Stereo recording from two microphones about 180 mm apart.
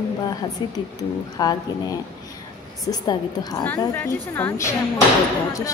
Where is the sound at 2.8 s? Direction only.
20° left (ahead or behind).